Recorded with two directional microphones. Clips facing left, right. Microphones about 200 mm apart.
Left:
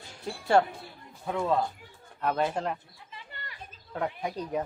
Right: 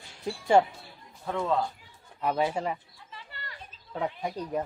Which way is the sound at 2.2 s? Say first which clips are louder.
Right 1 dB; 10° right (ahead or behind).